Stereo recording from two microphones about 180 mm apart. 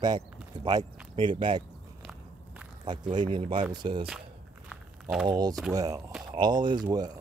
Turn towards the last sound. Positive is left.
turn(degrees=-20)  # may be behind; listen again after turning